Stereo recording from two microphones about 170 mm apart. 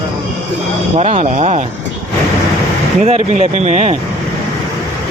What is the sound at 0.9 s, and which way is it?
Speech, 40° right (ahead or behind).